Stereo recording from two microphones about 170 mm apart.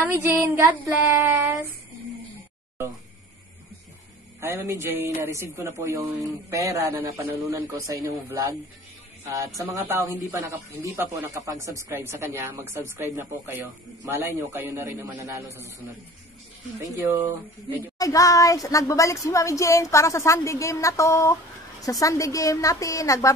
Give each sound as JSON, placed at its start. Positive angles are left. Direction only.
{"t": 0.0, "sound": "speech", "side_deg": -15}
{"t": 4.4, "sound": "a man's voice", "side_deg": -15}
{"t": 17.9, "sound": "a woman's voice", "side_deg": 20}